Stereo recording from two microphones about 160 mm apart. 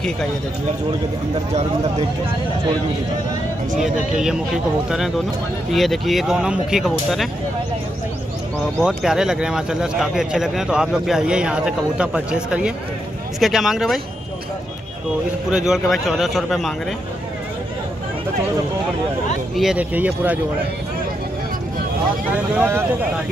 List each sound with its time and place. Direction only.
1.5 s speech: 45° right (ahead or behind)
3.8 s speech: 5° right (ahead or behind)
8.8 s speech: 5° right (ahead or behind)
15.5 s speech: 5° right (ahead or behind)
19.5 s speech: 5° right (ahead or behind)
22.3 s speech: 10° right (ahead or behind)